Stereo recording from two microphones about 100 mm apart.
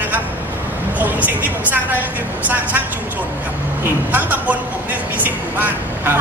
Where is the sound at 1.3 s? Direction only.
20° right (ahead or behind).